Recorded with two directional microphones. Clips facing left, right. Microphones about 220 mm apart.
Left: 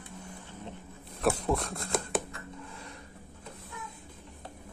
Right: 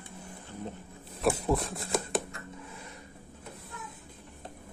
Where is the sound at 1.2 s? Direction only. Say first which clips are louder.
Right 1 dB; centre (ahead or behind).